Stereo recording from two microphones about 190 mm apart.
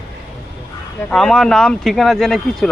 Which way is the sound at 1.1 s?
5° left (ahead or behind).